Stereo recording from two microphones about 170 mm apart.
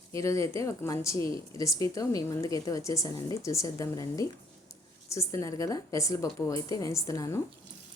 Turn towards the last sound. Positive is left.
turn(degrees=20)  # may be behind; listen again after turning